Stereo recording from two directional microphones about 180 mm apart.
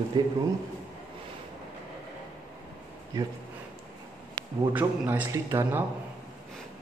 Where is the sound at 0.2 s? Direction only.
25° right (ahead or behind).